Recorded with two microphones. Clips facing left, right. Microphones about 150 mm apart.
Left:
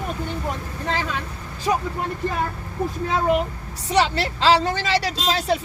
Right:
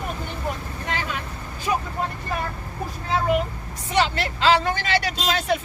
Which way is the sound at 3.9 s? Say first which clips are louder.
Left 2 dB; 35° left (ahead or behind).